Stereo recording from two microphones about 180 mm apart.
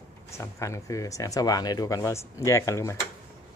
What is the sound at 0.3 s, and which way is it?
Speech, 15° left (ahead or behind).